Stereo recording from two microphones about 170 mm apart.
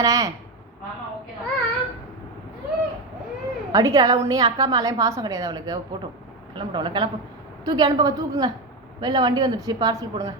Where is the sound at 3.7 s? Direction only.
20° right (ahead or behind).